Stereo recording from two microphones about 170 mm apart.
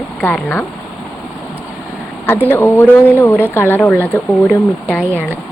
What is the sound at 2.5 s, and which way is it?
Speech, 10° left (ahead or behind).